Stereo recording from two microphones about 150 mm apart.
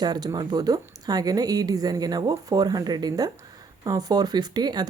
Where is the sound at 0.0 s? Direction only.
25° right (ahead or behind).